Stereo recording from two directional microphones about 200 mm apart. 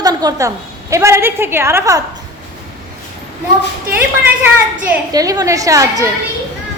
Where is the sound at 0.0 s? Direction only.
20° right (ahead or behind).